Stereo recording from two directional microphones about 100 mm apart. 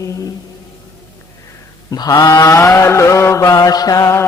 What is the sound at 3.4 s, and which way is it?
Mantra, 40° left (ahead or behind).